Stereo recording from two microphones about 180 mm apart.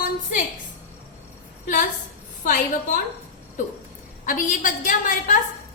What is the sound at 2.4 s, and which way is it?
Speech, 45° left (ahead or behind).